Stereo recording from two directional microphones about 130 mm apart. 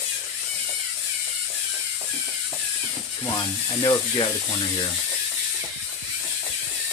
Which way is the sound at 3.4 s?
30° left (ahead or behind).